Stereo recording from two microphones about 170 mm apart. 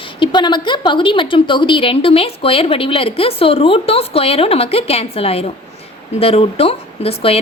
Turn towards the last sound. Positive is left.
turn(degrees=35)  # may be behind; listen again after turning